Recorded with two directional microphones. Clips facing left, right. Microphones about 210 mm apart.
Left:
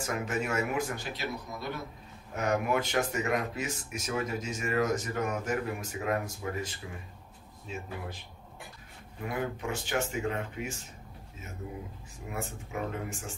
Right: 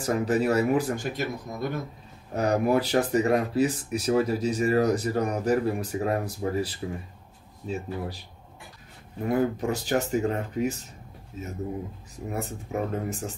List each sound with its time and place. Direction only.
0.0 s speech: 35° right (ahead or behind)
0.9 s speech: 50° right (ahead or behind)
2.3 s speech: 35° right (ahead or behind)
9.2 s speech: 40° right (ahead or behind)
12.3 s speech: 40° right (ahead or behind)